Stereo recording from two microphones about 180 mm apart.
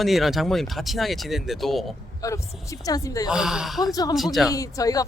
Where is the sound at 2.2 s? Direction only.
15° left (ahead or behind).